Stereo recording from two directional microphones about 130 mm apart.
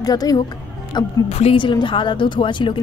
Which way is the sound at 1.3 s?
45° left (ahead or behind).